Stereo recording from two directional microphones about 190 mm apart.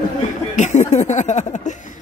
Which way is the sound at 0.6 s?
40° left (ahead or behind).